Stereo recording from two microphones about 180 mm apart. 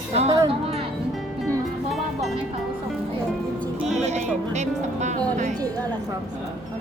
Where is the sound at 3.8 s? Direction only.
40° right (ahead or behind).